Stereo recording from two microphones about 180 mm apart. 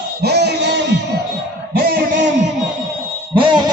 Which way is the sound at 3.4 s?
25° right (ahead or behind).